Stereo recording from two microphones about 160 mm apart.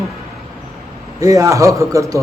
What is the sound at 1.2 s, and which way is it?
Speech, 20° right (ahead or behind).